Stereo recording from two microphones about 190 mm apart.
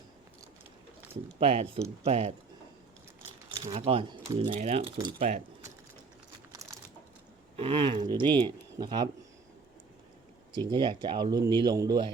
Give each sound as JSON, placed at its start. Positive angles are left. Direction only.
{"t": 1.4, "sound": "speech", "side_deg": -30}
{"t": 3.5, "sound": "speech", "side_deg": -35}
{"t": 6.5, "sound": "a sound", "side_deg": -15}
{"t": 7.5, "sound": "speech", "side_deg": -30}
{"t": 10.7, "sound": "speech", "side_deg": -25}